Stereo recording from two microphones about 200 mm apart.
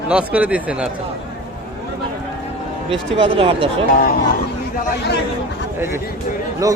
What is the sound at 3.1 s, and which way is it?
Speech, 25° right (ahead or behind).